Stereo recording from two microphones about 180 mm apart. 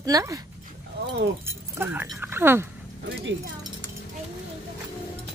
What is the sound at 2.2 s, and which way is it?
Speech, 10° right (ahead or behind).